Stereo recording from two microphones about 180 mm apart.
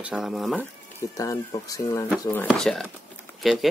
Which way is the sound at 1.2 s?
20° left (ahead or behind).